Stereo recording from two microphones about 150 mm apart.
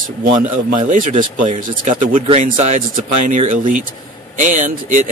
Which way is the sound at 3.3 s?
65° right (ahead or behind).